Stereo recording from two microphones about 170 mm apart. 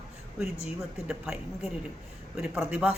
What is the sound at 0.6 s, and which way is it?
Speech, centre (ahead or behind).